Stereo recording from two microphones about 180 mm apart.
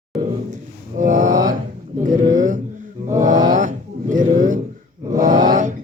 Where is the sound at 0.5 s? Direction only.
45° right (ahead or behind).